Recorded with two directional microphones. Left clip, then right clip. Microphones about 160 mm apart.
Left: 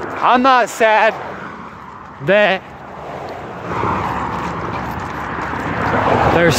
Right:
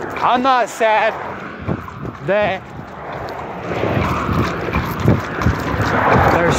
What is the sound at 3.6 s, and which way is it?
Vehicle, 10° left (ahead or behind).